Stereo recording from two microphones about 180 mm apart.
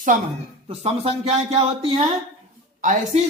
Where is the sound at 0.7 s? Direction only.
30° right (ahead or behind).